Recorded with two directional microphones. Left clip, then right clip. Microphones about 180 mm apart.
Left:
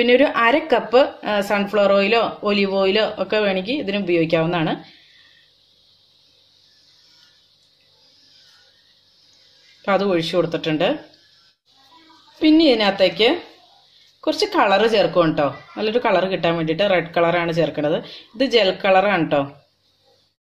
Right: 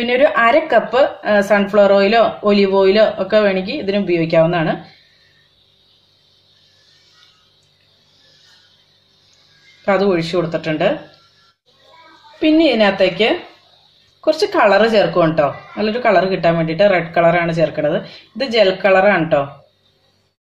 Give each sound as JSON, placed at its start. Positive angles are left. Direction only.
{"t": 0.0, "sound": "a woman's voice", "side_deg": 45}
{"t": 9.8, "sound": "a woman's voice", "side_deg": 45}
{"t": 12.4, "sound": "a woman's voice", "side_deg": 50}